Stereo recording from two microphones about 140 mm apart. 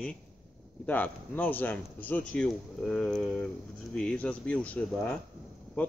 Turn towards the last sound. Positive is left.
turn(degrees=10)  # may be behind; listen again after turning